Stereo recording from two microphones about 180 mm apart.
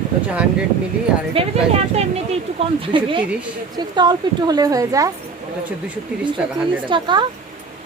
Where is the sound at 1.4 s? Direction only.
30° right (ahead or behind).